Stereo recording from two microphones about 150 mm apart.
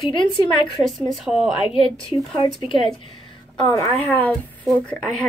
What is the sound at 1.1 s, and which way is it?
Speech, 5° right (ahead or behind).